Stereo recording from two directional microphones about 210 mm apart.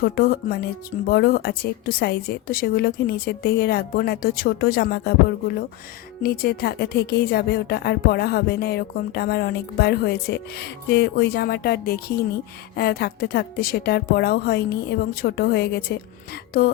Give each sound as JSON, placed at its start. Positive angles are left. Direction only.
{"t": 0.0, "sound": "speech", "side_deg": 45}
{"t": 6.2, "sound": "speech", "side_deg": 45}